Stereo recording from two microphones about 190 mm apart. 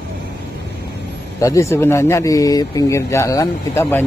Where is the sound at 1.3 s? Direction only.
15° left (ahead or behind).